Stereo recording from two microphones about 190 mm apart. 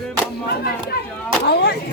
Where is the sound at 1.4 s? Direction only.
60° left (ahead or behind).